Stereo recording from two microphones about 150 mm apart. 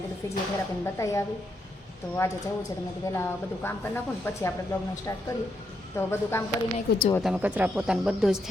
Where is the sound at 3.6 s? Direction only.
15° left (ahead or behind).